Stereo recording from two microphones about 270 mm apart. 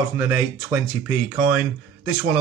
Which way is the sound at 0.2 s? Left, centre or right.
Centre.